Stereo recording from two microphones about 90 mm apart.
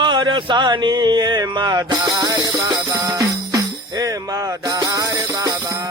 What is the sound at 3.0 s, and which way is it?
Jingle bell, 45° right (ahead or behind).